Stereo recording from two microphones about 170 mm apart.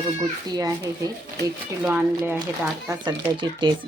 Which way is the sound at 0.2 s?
20° right (ahead or behind).